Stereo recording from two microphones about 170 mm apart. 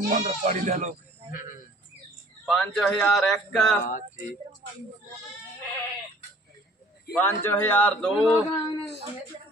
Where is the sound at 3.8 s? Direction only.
50° left (ahead or behind).